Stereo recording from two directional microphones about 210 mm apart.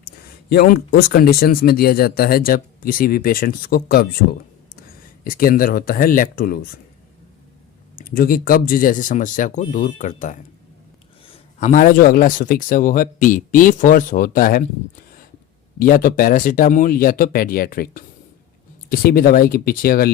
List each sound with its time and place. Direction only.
0.0 s speech: 45° left (ahead or behind)
7.9 s speech: 45° left (ahead or behind)
15.8 s speech: 45° left (ahead or behind)